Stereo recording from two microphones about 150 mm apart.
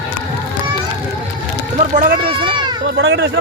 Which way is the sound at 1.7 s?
70° right (ahead or behind).